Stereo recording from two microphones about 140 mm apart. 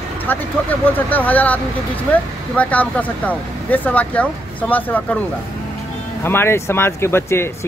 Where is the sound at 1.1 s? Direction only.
10° left (ahead or behind).